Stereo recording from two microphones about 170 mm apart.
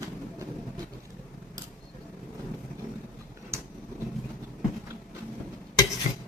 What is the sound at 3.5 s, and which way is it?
Tick-tock, 15° right (ahead or behind).